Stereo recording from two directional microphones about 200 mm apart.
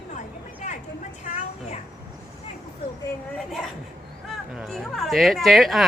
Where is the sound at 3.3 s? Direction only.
Centre (ahead or behind).